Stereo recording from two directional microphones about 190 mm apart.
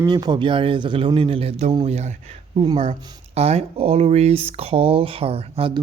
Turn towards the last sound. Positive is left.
turn(degrees=-30)  # may be behind; listen again after turning